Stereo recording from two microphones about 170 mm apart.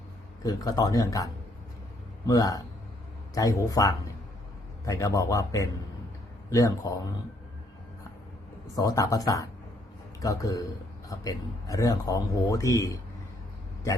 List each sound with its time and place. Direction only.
0.4 s a man's voice: 20° left (ahead or behind)
8.7 s a man's voice: 20° left (ahead or behind)